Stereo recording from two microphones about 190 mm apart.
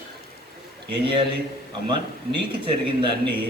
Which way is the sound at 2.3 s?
25° right (ahead or behind).